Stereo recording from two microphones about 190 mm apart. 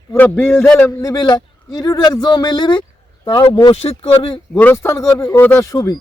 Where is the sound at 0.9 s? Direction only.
15° left (ahead or behind).